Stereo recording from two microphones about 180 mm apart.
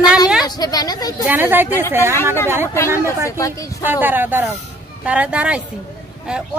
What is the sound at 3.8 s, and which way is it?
Speech, 10° right (ahead or behind).